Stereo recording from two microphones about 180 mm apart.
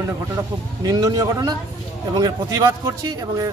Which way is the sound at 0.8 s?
20° right (ahead or behind).